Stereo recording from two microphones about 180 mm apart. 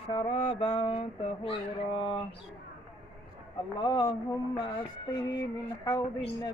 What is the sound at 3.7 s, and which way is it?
Speech, 30° left (ahead or behind).